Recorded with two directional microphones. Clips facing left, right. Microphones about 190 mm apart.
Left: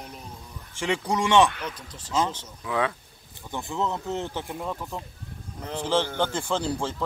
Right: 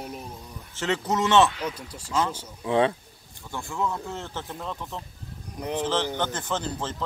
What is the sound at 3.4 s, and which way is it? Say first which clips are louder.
Speech: left 1 dB; 20° left (ahead or behind).